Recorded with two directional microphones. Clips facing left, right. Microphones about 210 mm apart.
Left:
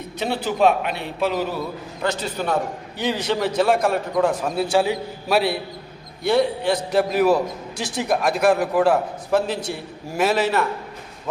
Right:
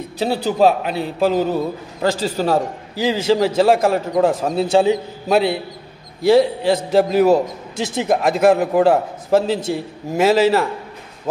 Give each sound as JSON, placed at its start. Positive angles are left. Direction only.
{"t": 0.2, "sound": "a man's voice", "side_deg": -35}
{"t": 7.8, "sound": "speech", "side_deg": -90}
{"t": 8.1, "sound": "a man's voice", "side_deg": -20}